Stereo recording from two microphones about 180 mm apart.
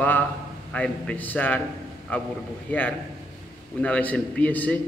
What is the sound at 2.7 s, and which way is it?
A man's voice, 10° left (ahead or behind).